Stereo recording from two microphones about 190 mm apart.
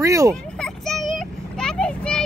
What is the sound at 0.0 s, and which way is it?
Speech, 15° right (ahead or behind).